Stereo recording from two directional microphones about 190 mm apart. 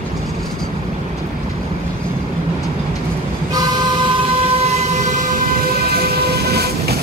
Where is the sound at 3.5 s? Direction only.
30° right (ahead or behind).